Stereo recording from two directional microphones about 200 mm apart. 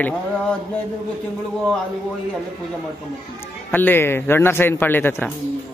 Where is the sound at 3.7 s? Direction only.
10° left (ahead or behind).